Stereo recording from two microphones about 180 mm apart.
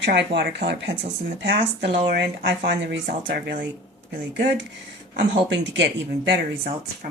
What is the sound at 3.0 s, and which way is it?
Speech, 60° right (ahead or behind).